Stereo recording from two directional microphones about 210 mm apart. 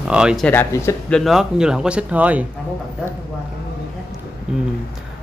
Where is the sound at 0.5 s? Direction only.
10° left (ahead or behind); by 2.4 s 5° right (ahead or behind).